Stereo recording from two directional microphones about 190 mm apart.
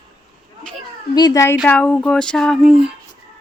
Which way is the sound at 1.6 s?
5° left (ahead or behind).